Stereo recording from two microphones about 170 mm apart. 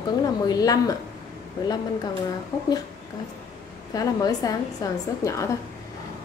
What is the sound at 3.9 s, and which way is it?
A woman's voice, 20° left (ahead or behind).